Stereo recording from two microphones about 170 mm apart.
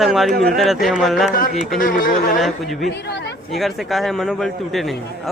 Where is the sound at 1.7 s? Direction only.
50° left (ahead or behind).